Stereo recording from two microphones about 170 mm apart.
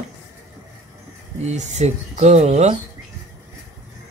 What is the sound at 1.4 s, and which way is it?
Speech, 40° right (ahead or behind).